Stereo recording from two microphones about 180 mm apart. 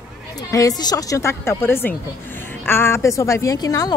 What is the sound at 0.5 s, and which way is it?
A woman's voice, 20° left (ahead or behind).